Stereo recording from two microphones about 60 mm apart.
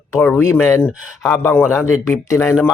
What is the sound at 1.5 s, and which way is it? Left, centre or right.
Speech, left.